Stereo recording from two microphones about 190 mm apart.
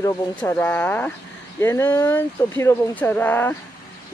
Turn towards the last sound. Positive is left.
turn(degrees=10)  # may be behind; listen again after turning